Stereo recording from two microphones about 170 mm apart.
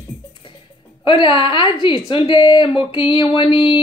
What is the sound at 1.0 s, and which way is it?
Speech, 30° left (ahead or behind).